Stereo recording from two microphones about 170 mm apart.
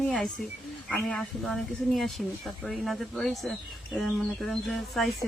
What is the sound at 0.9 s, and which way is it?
Speech, 5° left (ahead or behind).